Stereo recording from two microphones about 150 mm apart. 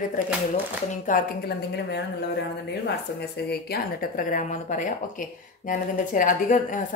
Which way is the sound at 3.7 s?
70° left (ahead or behind).